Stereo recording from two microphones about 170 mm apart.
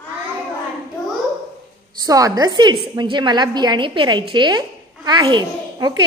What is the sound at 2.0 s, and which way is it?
A woman's voice, 20° right (ahead or behind).